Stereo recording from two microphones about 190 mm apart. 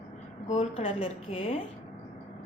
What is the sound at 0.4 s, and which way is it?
A woman's voice, 35° left (ahead or behind).